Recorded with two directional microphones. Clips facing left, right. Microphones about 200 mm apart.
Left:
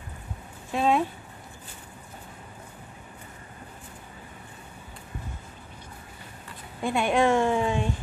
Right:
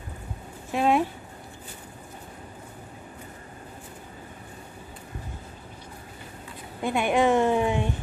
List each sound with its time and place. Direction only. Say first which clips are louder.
0.7 s a woman's voice: right 1 dB; 15° right (ahead or behind)
6.8 s a woman's voice: even; 15° right (ahead or behind)